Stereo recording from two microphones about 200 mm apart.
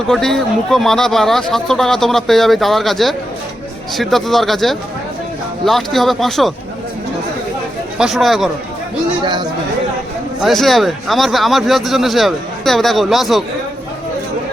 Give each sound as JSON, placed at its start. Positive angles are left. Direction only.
{"t": 0.1, "sound": "speech", "side_deg": 0}
{"t": 7.9, "sound": "speech", "side_deg": 0}
{"t": 9.2, "sound": "speech", "side_deg": -20}
{"t": 10.4, "sound": "speech", "side_deg": 0}